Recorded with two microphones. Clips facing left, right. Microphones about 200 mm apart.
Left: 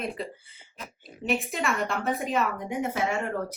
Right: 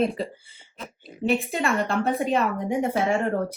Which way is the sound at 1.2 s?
35° right (ahead or behind).